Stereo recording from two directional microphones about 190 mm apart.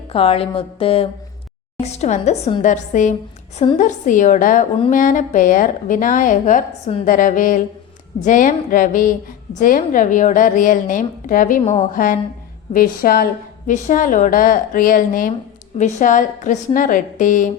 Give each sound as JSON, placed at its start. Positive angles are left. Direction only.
{"t": 0.1, "sound": "a woman's voice", "side_deg": 30}
{"t": 12.7, "sound": "a woman's voice", "side_deg": 50}